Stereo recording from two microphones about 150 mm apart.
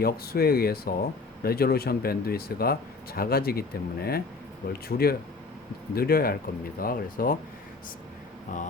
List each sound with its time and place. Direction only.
0.0 s speech: 90° left
6.7 s speech: 75° left (ahead or behind)
8.5 s a sound: 60° left (ahead or behind)